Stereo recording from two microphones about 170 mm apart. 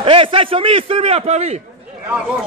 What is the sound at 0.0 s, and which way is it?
A man's voice, 30° right (ahead or behind).